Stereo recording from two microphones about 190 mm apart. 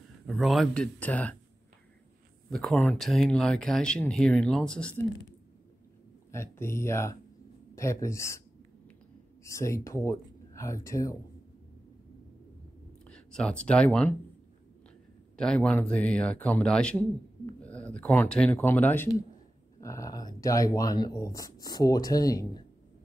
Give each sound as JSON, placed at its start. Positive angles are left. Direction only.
{"t": 0.3, "sound": "speech", "side_deg": 0}
{"t": 2.5, "sound": "speech", "side_deg": 5}
{"t": 6.3, "sound": "speech", "side_deg": 15}
{"t": 9.4, "sound": "speech", "side_deg": 15}
{"t": 13.1, "sound": "speech", "side_deg": 5}
{"t": 15.3, "sound": "speech", "side_deg": 5}